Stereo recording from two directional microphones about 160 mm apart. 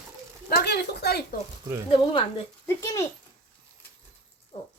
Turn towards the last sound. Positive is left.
turn(degrees=40)  # may be behind; listen again after turning